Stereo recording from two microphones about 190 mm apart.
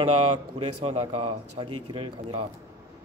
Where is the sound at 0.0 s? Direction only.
30° right (ahead or behind).